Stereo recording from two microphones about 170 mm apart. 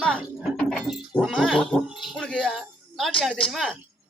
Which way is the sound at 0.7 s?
Centre (ahead or behind).